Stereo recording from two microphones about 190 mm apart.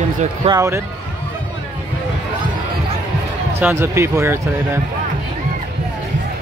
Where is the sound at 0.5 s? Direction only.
15° right (ahead or behind).